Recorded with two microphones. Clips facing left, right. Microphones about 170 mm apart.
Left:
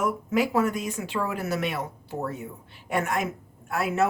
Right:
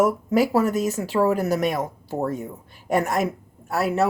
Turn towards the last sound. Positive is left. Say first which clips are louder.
# right 4 dB
turn(degrees=-35)  # may be behind; listen again after turning